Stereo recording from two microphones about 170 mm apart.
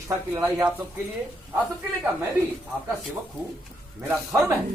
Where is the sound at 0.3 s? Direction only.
10° right (ahead or behind).